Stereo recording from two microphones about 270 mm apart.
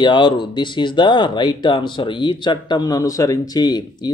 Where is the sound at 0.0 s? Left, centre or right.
Centre.